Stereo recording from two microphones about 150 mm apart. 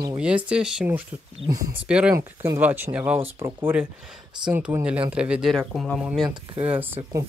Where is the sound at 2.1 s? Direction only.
20° right (ahead or behind); by 6.2 s centre (ahead or behind).